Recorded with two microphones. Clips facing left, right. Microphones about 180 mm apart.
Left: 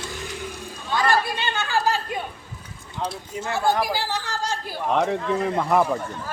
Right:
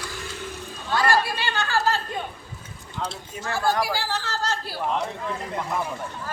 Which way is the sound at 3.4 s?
20° left (ahead or behind).